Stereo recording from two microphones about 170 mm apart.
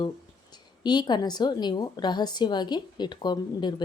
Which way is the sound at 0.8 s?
25° left (ahead or behind).